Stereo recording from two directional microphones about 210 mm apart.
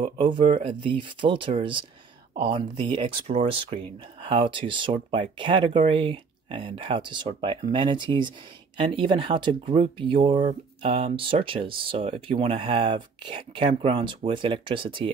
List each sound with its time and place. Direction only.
0.0 s speech: 25° right (ahead or behind)